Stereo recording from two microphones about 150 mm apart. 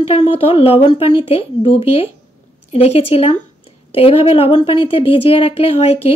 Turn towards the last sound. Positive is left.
turn(degrees=40)  # may be behind; listen again after turning